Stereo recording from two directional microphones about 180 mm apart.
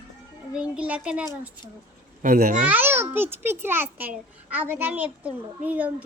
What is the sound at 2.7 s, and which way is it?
A child's voice, 10° right (ahead or behind).